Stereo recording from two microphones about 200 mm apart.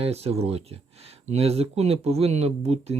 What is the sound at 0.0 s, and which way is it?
Speech, 30° right (ahead or behind).